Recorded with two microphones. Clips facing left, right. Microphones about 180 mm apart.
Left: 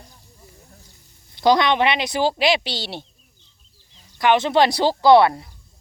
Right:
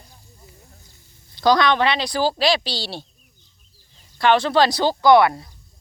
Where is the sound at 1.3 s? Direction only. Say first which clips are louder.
Even; 25° left (ahead or behind).